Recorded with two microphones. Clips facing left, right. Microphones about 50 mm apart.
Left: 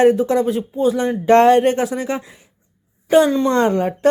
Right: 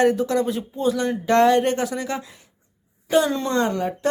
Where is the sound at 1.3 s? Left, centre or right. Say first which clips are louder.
Left 5 dB; left.